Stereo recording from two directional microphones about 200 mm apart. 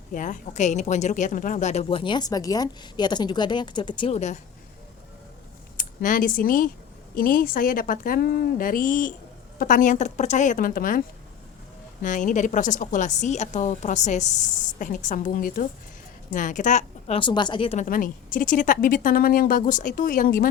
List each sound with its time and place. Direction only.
0.1 s a woman's voice: 40° left (ahead or behind)
5.7 s a woman's voice: 40° left (ahead or behind)
12.0 s a woman's voice: 40° left (ahead or behind)